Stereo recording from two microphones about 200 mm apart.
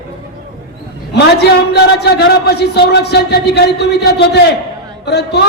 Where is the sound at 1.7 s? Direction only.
55° left (ahead or behind).